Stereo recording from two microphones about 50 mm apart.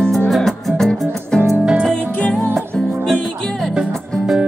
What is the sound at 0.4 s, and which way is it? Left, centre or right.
Music, centre.